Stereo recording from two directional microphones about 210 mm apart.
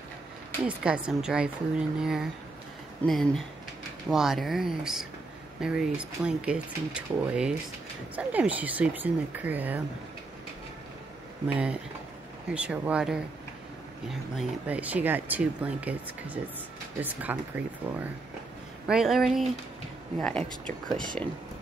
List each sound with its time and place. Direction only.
0.7 s speech: 5° right (ahead or behind)
11.4 s speech: 5° right (ahead or behind)
18.9 s speech: 5° right (ahead or behind)